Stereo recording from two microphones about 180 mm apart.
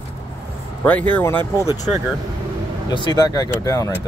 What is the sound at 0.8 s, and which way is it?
Speech, 10° left (ahead or behind).